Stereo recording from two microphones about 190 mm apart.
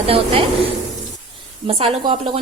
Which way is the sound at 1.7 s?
30° right (ahead or behind).